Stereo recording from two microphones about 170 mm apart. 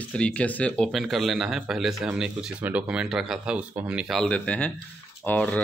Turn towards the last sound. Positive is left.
turn(degrees=10)  # may be behind; listen again after turning